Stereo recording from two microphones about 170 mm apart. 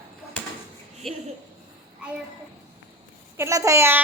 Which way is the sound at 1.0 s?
Centre (ahead or behind).